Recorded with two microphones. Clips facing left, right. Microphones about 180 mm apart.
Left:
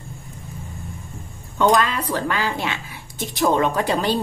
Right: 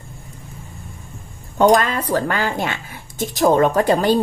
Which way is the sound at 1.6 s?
45° right (ahead or behind).